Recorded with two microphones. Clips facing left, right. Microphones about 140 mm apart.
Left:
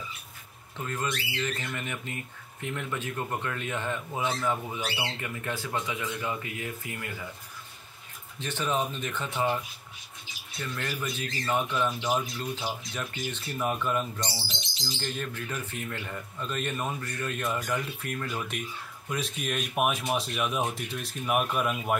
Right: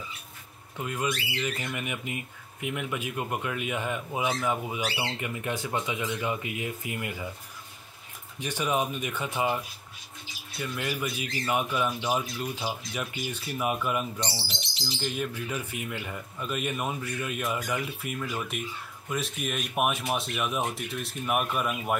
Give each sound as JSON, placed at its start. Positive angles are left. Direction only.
{"t": 0.7, "sound": "speech", "side_deg": -10}
{"t": 8.4, "sound": "speech", "side_deg": -15}
{"t": 10.6, "sound": "speech", "side_deg": -10}